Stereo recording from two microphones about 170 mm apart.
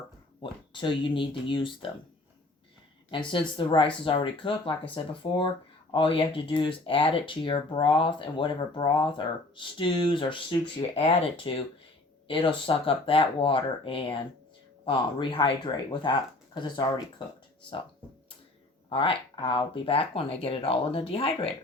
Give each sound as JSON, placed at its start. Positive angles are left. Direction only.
{"t": 0.7, "sound": "speech", "side_deg": 30}
{"t": 3.1, "sound": "speech", "side_deg": 30}
{"t": 12.6, "sound": "speech", "side_deg": 30}
{"t": 18.9, "sound": "speech", "side_deg": 30}